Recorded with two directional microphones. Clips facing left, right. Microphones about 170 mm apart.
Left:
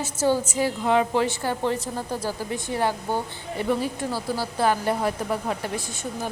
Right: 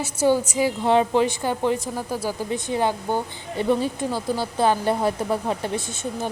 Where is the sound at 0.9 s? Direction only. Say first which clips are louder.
Right 3 dB; 25° right (ahead or behind).